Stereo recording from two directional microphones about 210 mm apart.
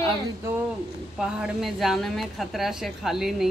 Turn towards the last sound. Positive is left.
turn(degrees=0)  # may be behind; listen again after turning